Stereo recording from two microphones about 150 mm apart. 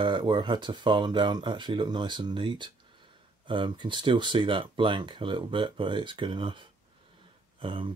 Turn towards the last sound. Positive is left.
turn(degrees=-35)  # may be behind; listen again after turning